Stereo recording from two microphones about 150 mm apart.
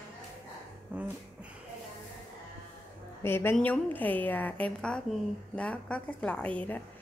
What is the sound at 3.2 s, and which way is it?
A woman's voice, 15° left (ahead or behind).